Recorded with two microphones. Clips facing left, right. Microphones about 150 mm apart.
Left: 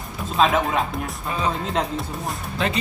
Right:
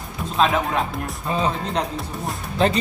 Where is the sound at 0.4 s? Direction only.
Centre (ahead or behind).